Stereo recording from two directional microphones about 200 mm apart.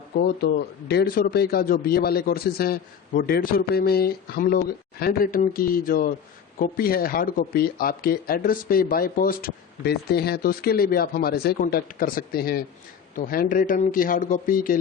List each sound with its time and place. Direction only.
0.2 s speech: 55° left (ahead or behind)